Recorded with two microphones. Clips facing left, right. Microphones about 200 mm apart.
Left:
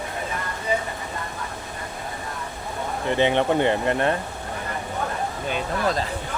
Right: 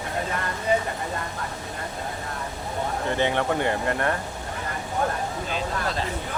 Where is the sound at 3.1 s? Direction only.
20° left (ahead or behind).